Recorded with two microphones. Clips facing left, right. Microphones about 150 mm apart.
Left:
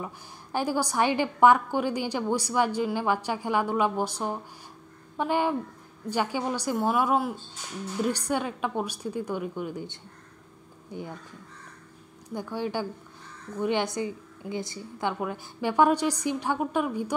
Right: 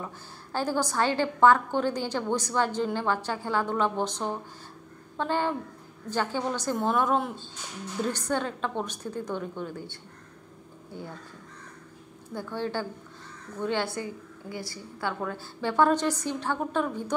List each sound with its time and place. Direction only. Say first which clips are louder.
0.0 s a woman's voice: left 1 dB; 15° left (ahead or behind)
12.4 s a woman's voice: left 1 dB; 10° left (ahead or behind)